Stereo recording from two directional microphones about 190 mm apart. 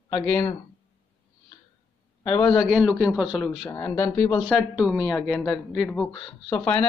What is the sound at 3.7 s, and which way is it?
Speech, 10° left (ahead or behind).